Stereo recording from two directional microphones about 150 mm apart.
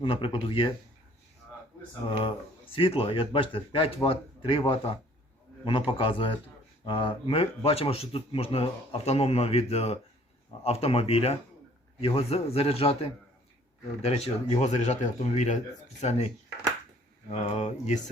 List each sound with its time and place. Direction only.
0.0 s speech: 35° left (ahead or behind)
2.0 s speech: 30° left (ahead or behind); by 18.0 s 50° left (ahead or behind)